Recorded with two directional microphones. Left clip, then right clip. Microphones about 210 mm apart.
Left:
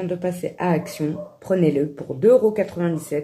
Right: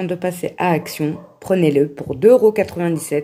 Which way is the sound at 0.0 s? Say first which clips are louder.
Right 3 dB; 40° right (ahead or behind).